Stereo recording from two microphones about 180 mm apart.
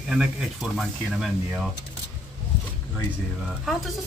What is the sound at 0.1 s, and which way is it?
Speech, 5° right (ahead or behind).